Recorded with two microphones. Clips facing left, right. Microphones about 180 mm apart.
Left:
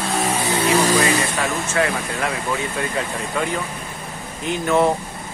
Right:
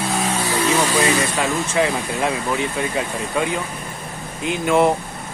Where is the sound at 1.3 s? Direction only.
20° right (ahead or behind).